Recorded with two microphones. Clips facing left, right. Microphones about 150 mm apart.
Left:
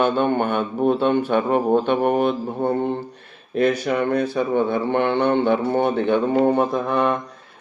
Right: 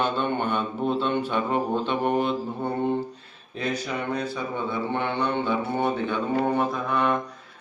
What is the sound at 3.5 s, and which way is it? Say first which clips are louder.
Speech: left 10 dB; 60° left (ahead or behind).